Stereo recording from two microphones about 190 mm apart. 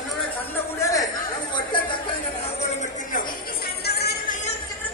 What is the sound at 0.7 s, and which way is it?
Chatter, 15° left (ahead or behind).